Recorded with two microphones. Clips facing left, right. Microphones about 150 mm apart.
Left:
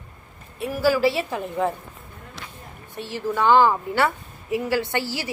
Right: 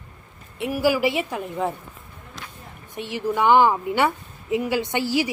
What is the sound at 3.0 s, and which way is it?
A woman's voice, 15° right (ahead or behind).